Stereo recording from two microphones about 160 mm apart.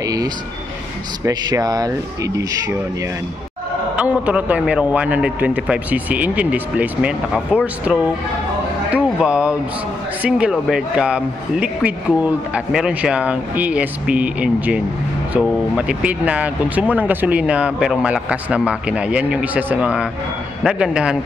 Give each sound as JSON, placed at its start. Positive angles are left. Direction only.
{"t": 0.0, "sound": "vehicle", "side_deg": -20}
{"t": 1.2, "sound": "speech", "side_deg": -25}
{"t": 4.0, "sound": "a man's voice", "side_deg": -10}